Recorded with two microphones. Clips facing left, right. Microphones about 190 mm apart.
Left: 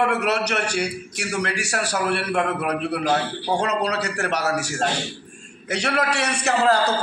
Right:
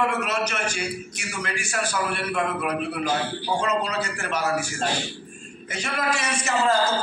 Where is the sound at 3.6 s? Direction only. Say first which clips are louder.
Left 1 dB; 70° left (ahead or behind).